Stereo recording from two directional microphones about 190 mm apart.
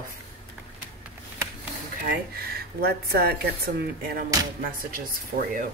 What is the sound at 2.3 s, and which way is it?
Speech, 55° right (ahead or behind).